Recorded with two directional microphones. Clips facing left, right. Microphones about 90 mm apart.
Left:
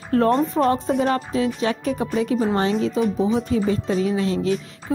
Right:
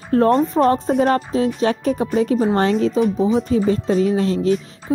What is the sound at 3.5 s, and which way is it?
Speech, 40° right (ahead or behind).